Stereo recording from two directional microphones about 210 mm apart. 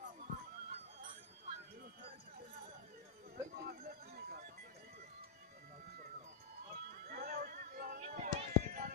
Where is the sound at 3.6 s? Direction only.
45° right (ahead or behind).